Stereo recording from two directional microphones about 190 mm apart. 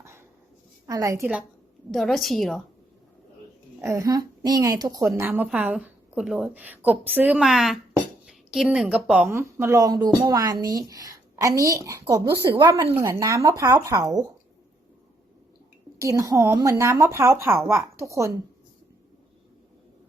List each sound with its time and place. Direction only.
0.0 s a sound: 15° right (ahead or behind)
0.9 s a woman's voice: 15° right (ahead or behind)
1.2 s a woman's voice: 5° right (ahead or behind)
3.8 s a woman's voice: 15° right (ahead or behind)
16.0 s a woman's voice: 15° right (ahead or behind)